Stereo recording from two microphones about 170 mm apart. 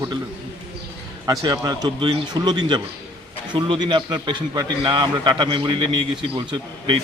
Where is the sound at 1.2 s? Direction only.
20° right (ahead or behind).